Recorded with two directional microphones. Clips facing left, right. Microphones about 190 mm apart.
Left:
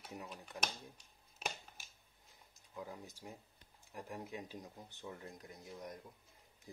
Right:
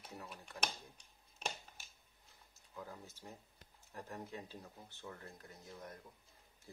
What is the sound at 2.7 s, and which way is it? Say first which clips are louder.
Speech: left 2 dB; 15° left (ahead or behind).